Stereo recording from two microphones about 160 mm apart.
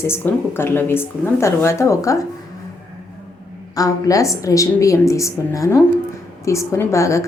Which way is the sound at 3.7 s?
20° left (ahead or behind).